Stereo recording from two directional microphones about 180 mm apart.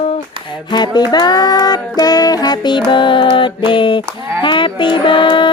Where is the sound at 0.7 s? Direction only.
25° left (ahead or behind).